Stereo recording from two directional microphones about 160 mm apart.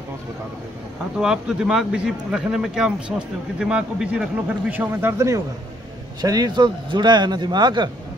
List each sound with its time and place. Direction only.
1.1 s a man's voice: 5° right (ahead or behind); by 7.9 s 25° right (ahead or behind)